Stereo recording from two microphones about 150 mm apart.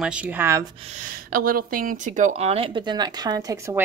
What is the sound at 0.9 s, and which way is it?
A woman's voice, 60° right (ahead or behind).